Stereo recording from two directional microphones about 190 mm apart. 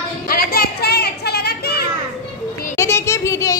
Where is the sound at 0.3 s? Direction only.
50° left (ahead or behind).